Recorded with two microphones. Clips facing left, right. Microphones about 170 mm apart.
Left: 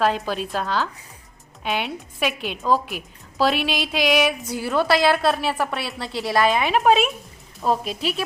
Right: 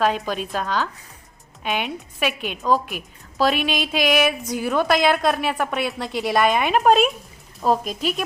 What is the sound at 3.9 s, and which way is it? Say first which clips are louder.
Music: even; 10° right (ahead or behind).